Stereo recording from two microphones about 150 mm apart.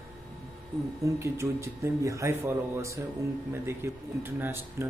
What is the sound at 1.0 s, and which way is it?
Speech, 20° right (ahead or behind).